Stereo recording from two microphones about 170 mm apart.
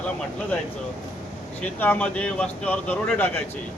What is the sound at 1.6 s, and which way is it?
Speech, 10° left (ahead or behind).